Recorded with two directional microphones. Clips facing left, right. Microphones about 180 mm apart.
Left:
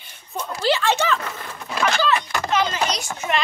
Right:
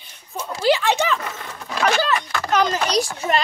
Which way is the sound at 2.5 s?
40° right (ahead or behind).